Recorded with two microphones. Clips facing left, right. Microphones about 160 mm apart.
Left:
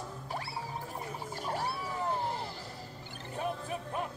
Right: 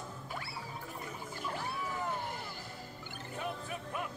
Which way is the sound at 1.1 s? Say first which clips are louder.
Left 4 dB; 35° left (ahead or behind).